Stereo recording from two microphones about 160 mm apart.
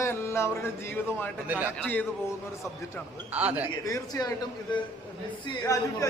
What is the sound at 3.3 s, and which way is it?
Speech, 10° right (ahead or behind).